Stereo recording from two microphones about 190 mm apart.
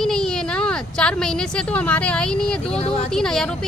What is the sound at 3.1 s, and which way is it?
Speech, 5° left (ahead or behind).